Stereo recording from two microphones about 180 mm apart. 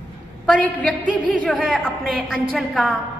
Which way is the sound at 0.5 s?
5° left (ahead or behind).